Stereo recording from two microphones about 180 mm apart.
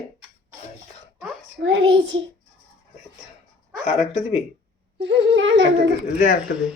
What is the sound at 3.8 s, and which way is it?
Speech, 35° left (ahead or behind).